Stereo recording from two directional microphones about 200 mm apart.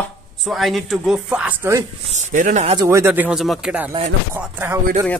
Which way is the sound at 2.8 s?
15° right (ahead or behind).